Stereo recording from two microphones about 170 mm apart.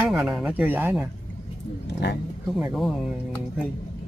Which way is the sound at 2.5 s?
Centre (ahead or behind).